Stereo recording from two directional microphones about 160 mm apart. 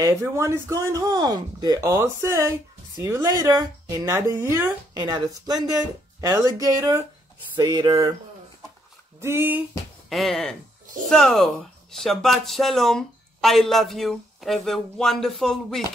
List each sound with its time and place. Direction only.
0.0 s speech: 20° right (ahead or behind)
9.2 s speech: 15° right (ahead or behind)
10.0 s speech: centre (ahead or behind)